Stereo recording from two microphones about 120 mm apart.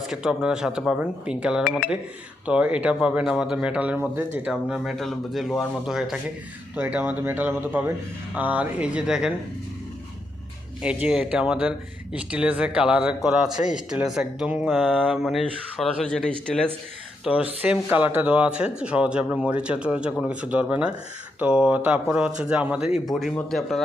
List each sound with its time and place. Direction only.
0.1 s speech: 5° right (ahead or behind)
4.7 s speech: 5° right (ahead or behind)
6.7 s speech: 15° right (ahead or behind)
10.8 s speech: 10° right (ahead or behind)
14.7 s speech: 5° left (ahead or behind)
17.3 s speech: 5° right (ahead or behind)